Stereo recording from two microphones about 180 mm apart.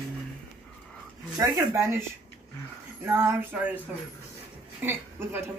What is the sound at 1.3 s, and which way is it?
Speech, 20° right (ahead or behind).